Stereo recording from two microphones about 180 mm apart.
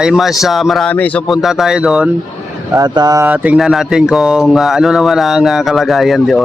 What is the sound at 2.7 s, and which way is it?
Speech, 25° right (ahead or behind).